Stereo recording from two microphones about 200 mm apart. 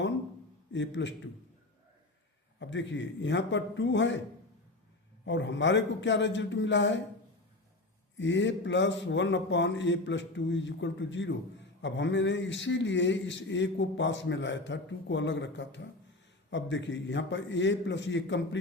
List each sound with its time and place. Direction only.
0.7 s a man's voice: 65° left (ahead or behind)
2.6 s a man's voice: 65° left (ahead or behind)
5.2 s a man's voice: 65° left (ahead or behind)
8.2 s a man's voice: 65° left (ahead or behind)